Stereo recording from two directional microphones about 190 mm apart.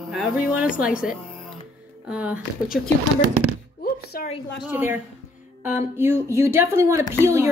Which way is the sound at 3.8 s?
50° left (ahead or behind).